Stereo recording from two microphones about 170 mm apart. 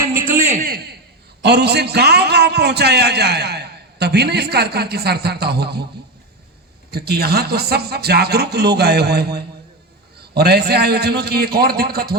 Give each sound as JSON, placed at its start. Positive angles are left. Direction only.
{"t": 0.2, "sound": "a sound", "side_deg": -55}
{"t": 1.4, "sound": "a man's voice", "side_deg": -75}
{"t": 6.9, "sound": "a man's voice", "side_deg": -70}